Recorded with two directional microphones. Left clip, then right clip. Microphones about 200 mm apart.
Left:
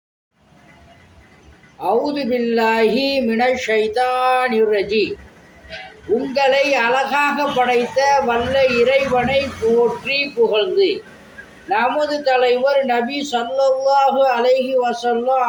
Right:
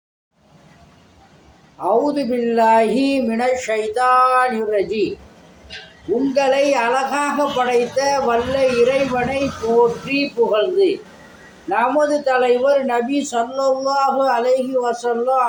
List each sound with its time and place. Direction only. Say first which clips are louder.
2.1 s speech: right 1 dB; 5° right (ahead or behind)
6.3 s a man's voice: left 1 dB; 5° right (ahead or behind)